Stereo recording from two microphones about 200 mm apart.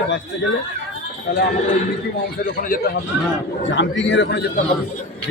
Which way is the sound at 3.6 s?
65° left (ahead or behind).